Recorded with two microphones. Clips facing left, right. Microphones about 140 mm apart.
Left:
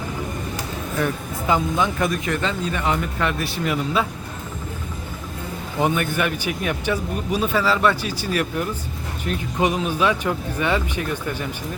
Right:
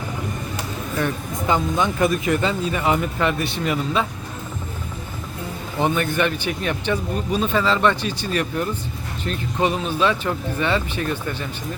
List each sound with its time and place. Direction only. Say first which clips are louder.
0.9 s speech: even; 5° left (ahead or behind)
5.8 s speech: right 1 dB; 5° left (ahead or behind)